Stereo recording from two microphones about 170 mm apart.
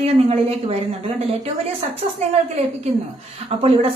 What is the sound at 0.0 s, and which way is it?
A woman's voice, 35° right (ahead or behind).